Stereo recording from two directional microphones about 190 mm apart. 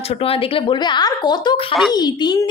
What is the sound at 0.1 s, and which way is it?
A woman's voice, 30° left (ahead or behind).